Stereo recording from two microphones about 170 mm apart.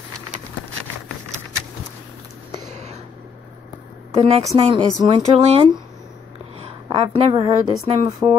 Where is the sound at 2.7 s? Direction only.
40° right (ahead or behind).